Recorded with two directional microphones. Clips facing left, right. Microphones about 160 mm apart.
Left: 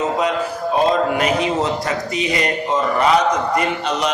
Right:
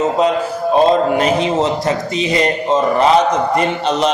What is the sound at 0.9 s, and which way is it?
A man's voice, 30° right (ahead or behind).